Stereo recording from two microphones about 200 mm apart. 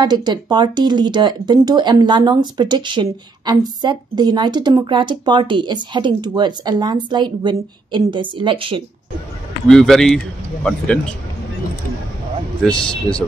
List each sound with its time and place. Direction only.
0.0 s speech: 20° right (ahead or behind)
9.7 s a man's voice: centre (ahead or behind)
12.6 s a man's voice: 5° left (ahead or behind)